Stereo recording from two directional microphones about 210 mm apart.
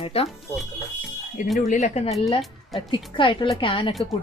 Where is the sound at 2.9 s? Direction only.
25° left (ahead or behind).